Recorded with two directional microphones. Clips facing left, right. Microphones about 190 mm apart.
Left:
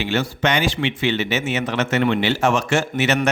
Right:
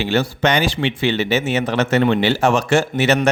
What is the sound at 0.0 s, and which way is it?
Speech, 35° right (ahead or behind).